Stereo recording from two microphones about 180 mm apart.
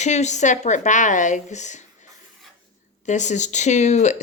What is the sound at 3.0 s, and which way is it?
A woman's voice, 40° left (ahead or behind).